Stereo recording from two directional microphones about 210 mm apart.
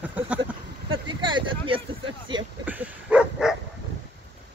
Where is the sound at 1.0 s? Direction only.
20° right (ahead or behind).